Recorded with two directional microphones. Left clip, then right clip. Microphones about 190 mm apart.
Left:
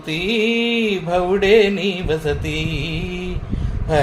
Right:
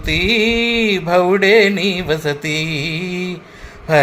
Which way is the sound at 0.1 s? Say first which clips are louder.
Right 4 dB; 20° right (ahead or behind).